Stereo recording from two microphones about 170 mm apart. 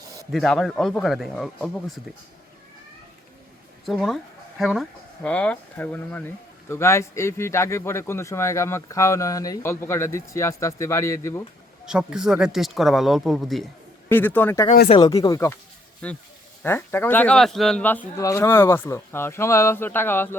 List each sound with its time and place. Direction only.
0.3 s speech: centre (ahead or behind)
3.8 s speech: centre (ahead or behind); by 11.4 s 15° left (ahead or behind)
11.9 s speech: 5° right (ahead or behind)
14.1 s speech: 10° left (ahead or behind)
14.8 s speech: 30° left (ahead or behind)
16.0 s speech: 5° left (ahead or behind)